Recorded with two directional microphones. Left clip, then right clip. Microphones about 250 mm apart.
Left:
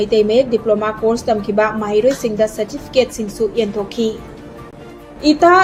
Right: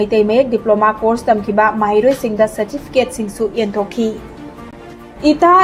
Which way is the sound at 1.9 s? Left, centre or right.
Centre.